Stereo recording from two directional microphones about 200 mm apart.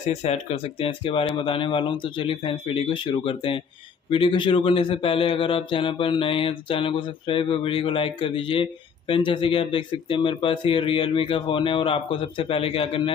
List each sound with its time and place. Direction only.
0.0 s a man's voice: 35° left (ahead or behind)